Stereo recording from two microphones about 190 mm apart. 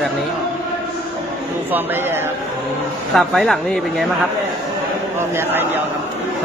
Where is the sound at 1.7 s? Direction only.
10° right (ahead or behind).